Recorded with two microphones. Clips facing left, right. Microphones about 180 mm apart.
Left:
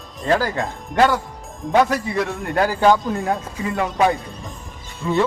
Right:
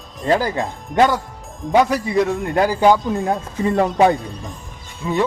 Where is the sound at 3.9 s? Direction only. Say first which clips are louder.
Right 2 dB; 30° right (ahead or behind).